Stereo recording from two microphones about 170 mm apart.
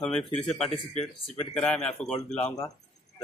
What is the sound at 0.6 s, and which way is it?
Speech, 35° left (ahead or behind).